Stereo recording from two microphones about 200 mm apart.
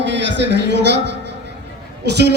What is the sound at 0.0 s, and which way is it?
Speech, 65° right (ahead or behind).